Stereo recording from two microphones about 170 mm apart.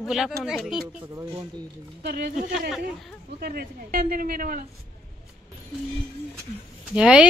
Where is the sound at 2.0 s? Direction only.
70° right (ahead or behind).